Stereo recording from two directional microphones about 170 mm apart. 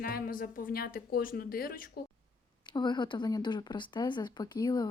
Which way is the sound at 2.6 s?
25° left (ahead or behind).